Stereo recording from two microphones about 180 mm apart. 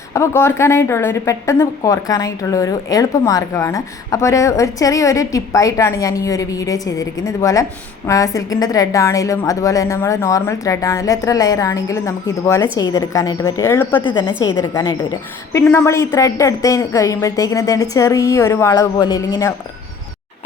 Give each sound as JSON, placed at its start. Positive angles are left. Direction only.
{"t": 0.1, "sound": "a woman's voice", "side_deg": 15}
{"t": 14.0, "sound": "a woman's voice", "side_deg": 25}
{"t": 14.4, "sound": "a woman's voice", "side_deg": 15}